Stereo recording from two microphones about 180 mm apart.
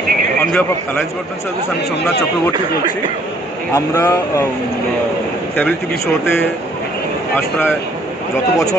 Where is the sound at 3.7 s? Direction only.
15° left (ahead or behind).